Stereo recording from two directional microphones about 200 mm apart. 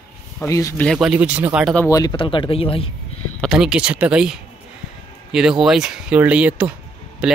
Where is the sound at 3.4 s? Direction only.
5° right (ahead or behind).